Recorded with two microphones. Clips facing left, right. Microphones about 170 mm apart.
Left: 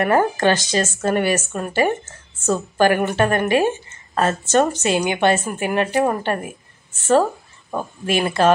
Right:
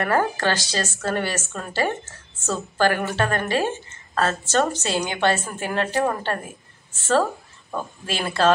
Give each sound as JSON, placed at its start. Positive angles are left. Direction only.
{"t": 0.0, "sound": "a woman's voice", "side_deg": 20}
{"t": 7.7, "sound": "a woman's voice", "side_deg": 20}